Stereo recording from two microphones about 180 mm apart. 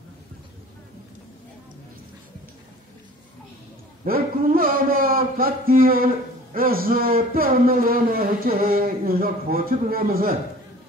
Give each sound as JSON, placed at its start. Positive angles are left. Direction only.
{"t": 4.0, "sound": "a man's voice", "side_deg": -50}